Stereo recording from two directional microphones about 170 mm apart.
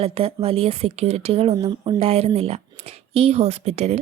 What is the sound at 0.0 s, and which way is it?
Speech, 35° right (ahead or behind).